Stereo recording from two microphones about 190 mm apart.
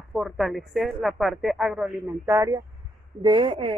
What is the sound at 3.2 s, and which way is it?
Speech, 25° right (ahead or behind).